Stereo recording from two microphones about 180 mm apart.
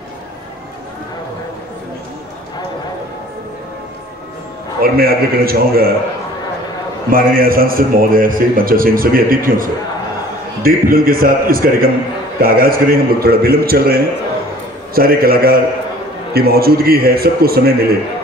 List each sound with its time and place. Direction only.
4.8 s a man's voice: 55° right (ahead or behind)
7.1 s a man's voice: 55° right (ahead or behind)